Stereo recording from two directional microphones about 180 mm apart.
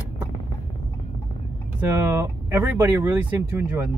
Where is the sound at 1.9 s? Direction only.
15° right (ahead or behind).